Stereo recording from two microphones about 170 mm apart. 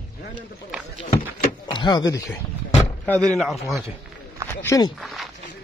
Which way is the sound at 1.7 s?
25° left (ahead or behind).